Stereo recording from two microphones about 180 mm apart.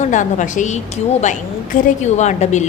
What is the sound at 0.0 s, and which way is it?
A woman's voice, 45° left (ahead or behind).